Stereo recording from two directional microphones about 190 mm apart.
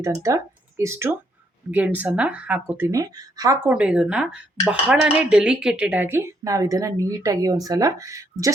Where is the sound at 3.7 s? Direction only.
5° right (ahead or behind).